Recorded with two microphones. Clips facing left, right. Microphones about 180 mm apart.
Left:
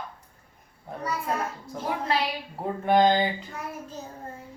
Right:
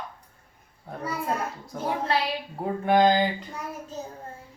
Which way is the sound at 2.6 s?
Centre (ahead or behind).